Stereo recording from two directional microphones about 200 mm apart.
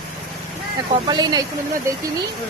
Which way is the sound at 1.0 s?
20° right (ahead or behind).